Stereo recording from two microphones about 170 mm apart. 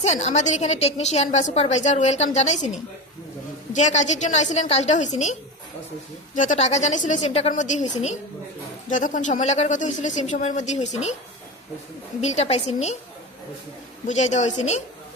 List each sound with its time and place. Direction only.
0.0 s a woman's voice: 40° left (ahead or behind)
8.9 s speech: 50° left (ahead or behind)
12.2 s a woman's voice: 40° left (ahead or behind)
14.1 s speech: 45° left (ahead or behind)